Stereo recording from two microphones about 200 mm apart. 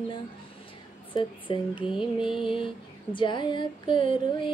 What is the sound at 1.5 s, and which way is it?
Female singing, 25° left (ahead or behind).